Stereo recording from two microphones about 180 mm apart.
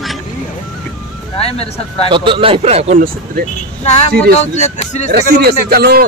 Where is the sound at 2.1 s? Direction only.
30° right (ahead or behind).